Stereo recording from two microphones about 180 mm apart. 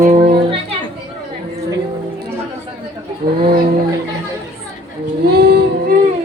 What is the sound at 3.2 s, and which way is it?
Speech, 55° right (ahead or behind).